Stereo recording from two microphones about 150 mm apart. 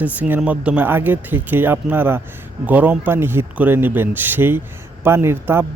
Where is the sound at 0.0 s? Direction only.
10° right (ahead or behind).